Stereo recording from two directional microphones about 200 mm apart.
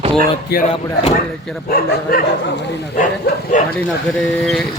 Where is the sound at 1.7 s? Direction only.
45° left (ahead or behind).